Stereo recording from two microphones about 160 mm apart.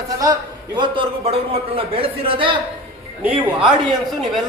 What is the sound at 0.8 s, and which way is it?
A man's voice, 35° right (ahead or behind).